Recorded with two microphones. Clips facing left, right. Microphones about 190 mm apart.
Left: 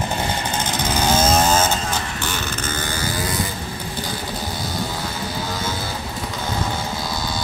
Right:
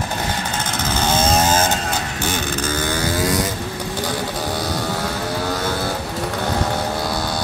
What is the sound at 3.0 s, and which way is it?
Vehicle, 75° right (ahead or behind).